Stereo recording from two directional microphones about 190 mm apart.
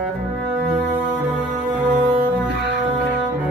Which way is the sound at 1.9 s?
45° right (ahead or behind).